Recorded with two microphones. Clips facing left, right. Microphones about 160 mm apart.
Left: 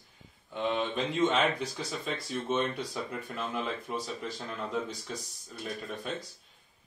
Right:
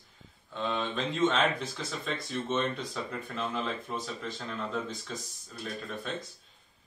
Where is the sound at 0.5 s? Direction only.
15° left (ahead or behind).